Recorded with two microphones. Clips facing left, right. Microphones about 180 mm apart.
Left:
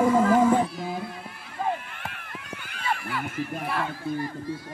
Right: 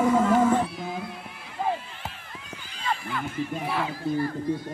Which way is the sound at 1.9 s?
60° left (ahead or behind).